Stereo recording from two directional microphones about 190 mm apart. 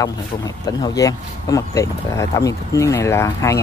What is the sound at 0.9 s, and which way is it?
Speech, 20° left (ahead or behind).